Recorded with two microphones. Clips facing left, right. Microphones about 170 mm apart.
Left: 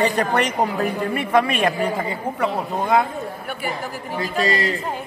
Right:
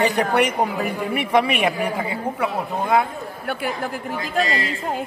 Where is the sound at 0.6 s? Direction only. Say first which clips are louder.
Left 1 dB; centre (ahead or behind).